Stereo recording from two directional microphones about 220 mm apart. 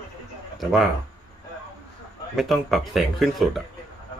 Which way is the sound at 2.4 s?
Centre (ahead or behind).